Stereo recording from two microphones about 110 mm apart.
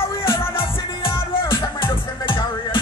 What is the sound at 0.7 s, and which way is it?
Music, 55° left (ahead or behind).